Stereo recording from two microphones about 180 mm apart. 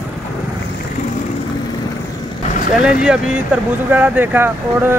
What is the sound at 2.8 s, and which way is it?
Speech, 5° right (ahead or behind).